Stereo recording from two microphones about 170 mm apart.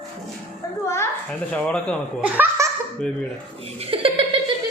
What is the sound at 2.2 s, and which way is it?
Speech, 15° right (ahead or behind).